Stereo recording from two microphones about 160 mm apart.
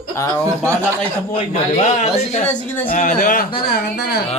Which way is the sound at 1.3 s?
45° left (ahead or behind).